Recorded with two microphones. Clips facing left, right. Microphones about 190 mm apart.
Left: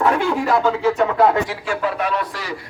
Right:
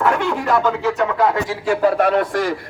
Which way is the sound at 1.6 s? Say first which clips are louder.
Right 6 dB; 45° right (ahead or behind).